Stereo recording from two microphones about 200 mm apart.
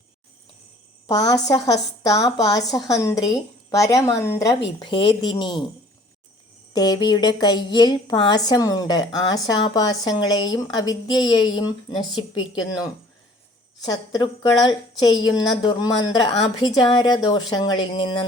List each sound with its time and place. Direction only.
1.0 s a woman's voice: 20° left (ahead or behind)
6.7 s a woman's voice: 20° left (ahead or behind)